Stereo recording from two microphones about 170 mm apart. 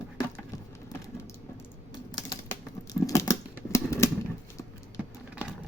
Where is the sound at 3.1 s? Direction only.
20° left (ahead or behind).